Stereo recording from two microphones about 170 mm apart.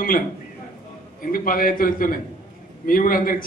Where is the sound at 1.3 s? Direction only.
55° left (ahead or behind).